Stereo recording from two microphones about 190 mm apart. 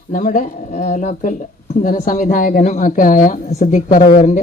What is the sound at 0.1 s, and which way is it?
A woman's voice, 45° left (ahead or behind).